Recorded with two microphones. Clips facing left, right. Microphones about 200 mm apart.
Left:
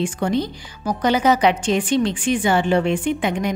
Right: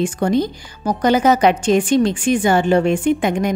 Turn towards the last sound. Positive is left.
turn(degrees=-45)  # may be behind; listen again after turning